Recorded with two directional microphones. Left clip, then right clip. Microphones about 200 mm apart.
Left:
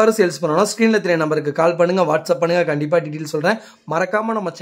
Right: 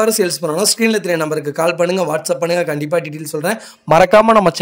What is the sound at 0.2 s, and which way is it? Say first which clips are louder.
A man's voice: even; centre (ahead or behind).